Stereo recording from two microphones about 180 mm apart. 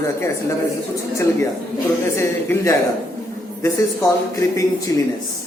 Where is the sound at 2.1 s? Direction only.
15° left (ahead or behind).